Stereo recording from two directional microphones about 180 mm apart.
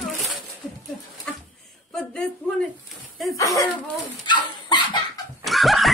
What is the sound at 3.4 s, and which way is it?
Speech, 15° left (ahead or behind).